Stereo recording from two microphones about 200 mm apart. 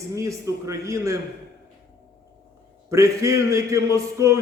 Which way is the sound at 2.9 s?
15° right (ahead or behind).